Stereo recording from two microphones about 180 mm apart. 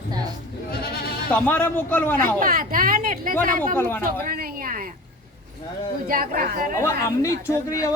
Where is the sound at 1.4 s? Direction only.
10° left (ahead or behind).